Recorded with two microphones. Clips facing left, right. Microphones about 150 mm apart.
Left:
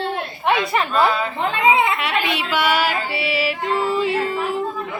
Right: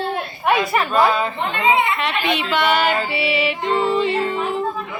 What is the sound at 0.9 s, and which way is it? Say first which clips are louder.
Speech: right 2 dB; 20° right (ahead or behind).